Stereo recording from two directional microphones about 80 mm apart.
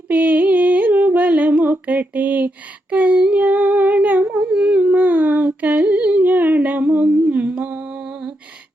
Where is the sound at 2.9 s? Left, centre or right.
Centre.